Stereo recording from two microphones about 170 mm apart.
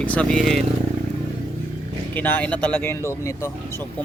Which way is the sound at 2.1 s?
10° left (ahead or behind).